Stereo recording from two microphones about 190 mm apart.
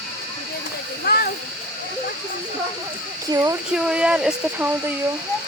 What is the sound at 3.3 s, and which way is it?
Speech, 15° right (ahead or behind).